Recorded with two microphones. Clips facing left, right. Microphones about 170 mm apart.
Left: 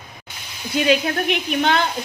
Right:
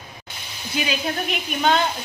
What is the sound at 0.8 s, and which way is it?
Speech, 60° left (ahead or behind).